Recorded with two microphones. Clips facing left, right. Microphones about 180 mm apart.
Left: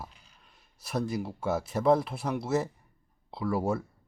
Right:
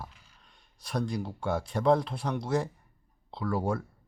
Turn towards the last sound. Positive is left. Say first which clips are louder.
# left 1 dB
turn(degrees=5)  # may be behind; listen again after turning